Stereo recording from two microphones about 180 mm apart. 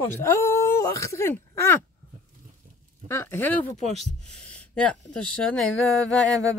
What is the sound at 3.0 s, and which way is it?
Speech, 15° left (ahead or behind).